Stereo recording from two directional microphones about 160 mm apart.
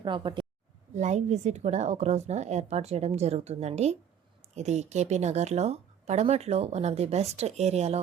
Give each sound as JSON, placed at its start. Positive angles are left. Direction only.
{"t": 0.0, "sound": "speech", "side_deg": -30}
{"t": 0.9, "sound": "speech", "side_deg": -45}